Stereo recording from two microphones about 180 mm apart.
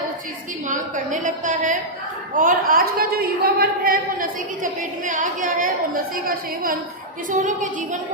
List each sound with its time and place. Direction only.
0.7 s a woman's voice: 45° right (ahead or behind)